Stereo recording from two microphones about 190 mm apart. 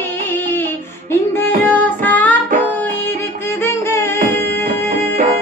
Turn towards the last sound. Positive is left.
turn(degrees=15)  # may be behind; listen again after turning